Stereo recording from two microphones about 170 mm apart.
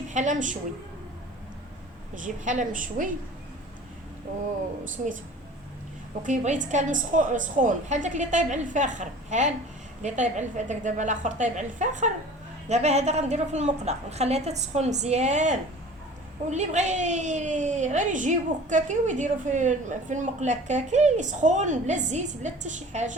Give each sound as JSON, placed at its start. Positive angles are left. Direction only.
{"t": 0.1, "sound": "a woman's voice", "side_deg": -45}
{"t": 2.2, "sound": "a woman's voice", "side_deg": -50}
{"t": 6.2, "sound": "a woman's voice", "side_deg": -45}